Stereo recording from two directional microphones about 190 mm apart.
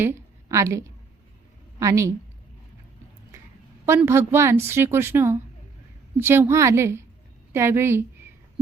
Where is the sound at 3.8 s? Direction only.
15° right (ahead or behind).